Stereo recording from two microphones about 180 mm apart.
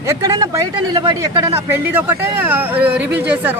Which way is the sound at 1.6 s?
10° right (ahead or behind).